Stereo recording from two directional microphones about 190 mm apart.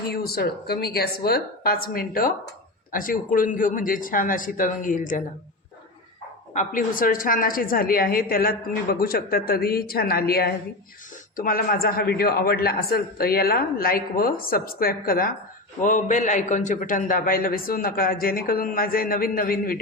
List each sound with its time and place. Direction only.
0.1 s a man's voice: 55° left (ahead or behind)
6.5 s a man's voice: 45° left (ahead or behind)